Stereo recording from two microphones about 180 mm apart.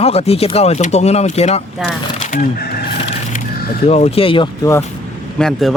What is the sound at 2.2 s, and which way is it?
Speech, 50° left (ahead or behind).